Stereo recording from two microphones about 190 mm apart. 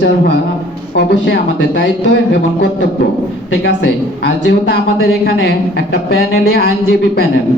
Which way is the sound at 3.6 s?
70° left (ahead or behind).